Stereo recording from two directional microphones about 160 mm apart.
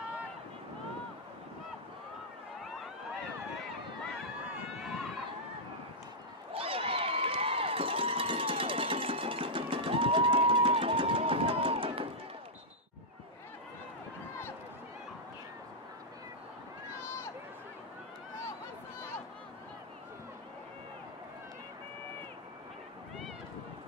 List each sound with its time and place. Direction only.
4.7 s run: 5° right (ahead or behind)
6.5 s crowd: 35° right (ahead or behind)